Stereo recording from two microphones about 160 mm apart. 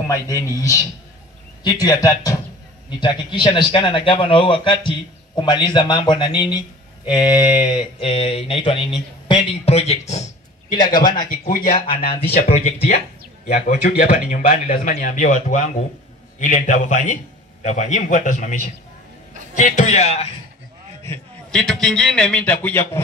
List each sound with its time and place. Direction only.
0.1 s a man's voice: 20° left (ahead or behind); by 10.2 s 40° left (ahead or behind)
10.7 s a man's voice: 25° left (ahead or behind)
11.1 s a man's voice: 60° left (ahead or behind)
12.0 s speech: 35° left (ahead or behind)
13.8 s a man's voice: 65° left (ahead or behind)
14.3 s a man's voice: 50° left (ahead or behind)
21.5 s a man's voice: 5° left (ahead or behind)